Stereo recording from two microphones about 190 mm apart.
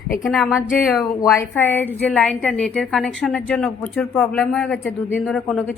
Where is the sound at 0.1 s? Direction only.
Centre (ahead or behind).